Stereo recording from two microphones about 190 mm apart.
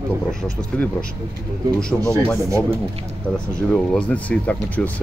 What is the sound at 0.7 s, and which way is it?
Speech, 5° left (ahead or behind).